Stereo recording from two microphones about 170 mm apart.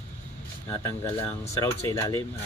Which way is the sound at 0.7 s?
15° left (ahead or behind).